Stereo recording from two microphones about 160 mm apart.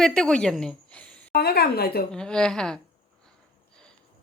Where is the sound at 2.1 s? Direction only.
5° left (ahead or behind).